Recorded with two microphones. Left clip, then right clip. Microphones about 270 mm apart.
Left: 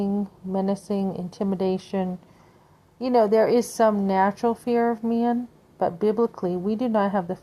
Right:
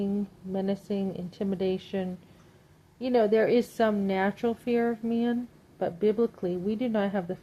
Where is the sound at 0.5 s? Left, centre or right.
Centre.